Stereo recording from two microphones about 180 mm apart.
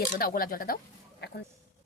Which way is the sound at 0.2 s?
55° left (ahead or behind).